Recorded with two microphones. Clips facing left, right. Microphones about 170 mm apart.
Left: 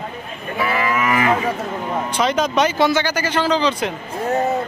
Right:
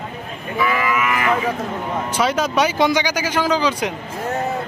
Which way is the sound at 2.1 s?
10° right (ahead or behind).